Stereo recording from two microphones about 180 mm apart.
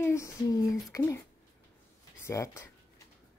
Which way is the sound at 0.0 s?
15° left (ahead or behind).